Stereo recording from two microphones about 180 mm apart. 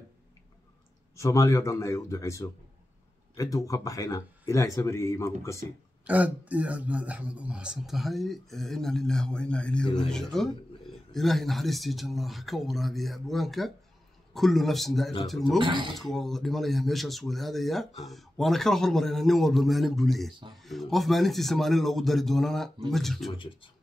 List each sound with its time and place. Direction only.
1.1 s speech: 15° left (ahead or behind)
6.0 s speech: 10° right (ahead or behind)
15.6 s speech: 25° right (ahead or behind)
15.9 s speech: centre (ahead or behind)
23.3 s speech: 30° left (ahead or behind)